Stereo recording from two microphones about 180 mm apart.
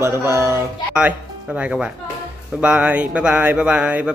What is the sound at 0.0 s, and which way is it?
Speech, 15° right (ahead or behind).